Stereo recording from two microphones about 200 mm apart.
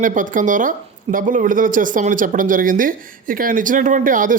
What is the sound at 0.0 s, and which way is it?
Speech, 40° right (ahead or behind).